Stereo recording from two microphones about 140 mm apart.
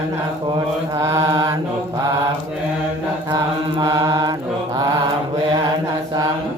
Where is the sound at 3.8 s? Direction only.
25° right (ahead or behind).